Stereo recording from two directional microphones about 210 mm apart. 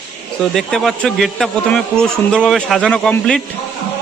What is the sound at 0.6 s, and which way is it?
A man's voice, centre (ahead or behind).